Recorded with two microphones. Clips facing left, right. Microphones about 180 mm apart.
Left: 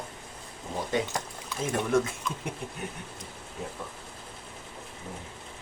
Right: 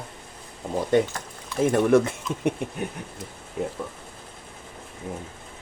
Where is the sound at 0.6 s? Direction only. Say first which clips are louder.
Right 8 dB; 60° right (ahead or behind).